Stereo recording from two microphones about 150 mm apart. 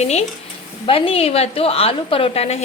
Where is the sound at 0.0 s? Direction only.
45° left (ahead or behind).